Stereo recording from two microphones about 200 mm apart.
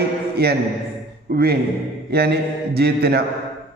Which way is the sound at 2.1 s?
55° right (ahead or behind).